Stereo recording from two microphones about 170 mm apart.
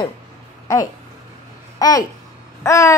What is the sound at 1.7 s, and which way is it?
A child's voice, 20° left (ahead or behind).